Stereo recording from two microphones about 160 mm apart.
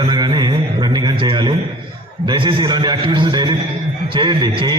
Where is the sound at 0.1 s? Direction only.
30° right (ahead or behind).